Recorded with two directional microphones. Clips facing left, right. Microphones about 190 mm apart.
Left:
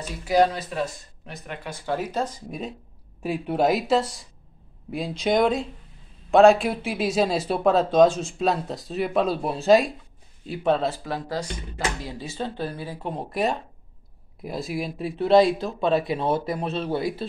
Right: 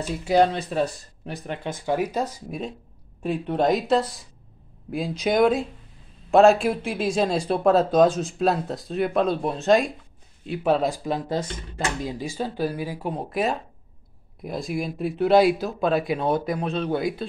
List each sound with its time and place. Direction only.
0.2 s speech: 30° right (ahead or behind)
1.7 s speech: 15° right (ahead or behind)
3.2 s speech: 5° left (ahead or behind); by 13.1 s 10° right (ahead or behind)
13.1 s speech: centre (ahead or behind)